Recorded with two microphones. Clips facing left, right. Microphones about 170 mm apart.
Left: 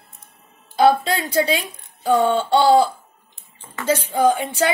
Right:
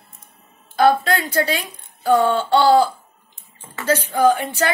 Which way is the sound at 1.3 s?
25° left (ahead or behind).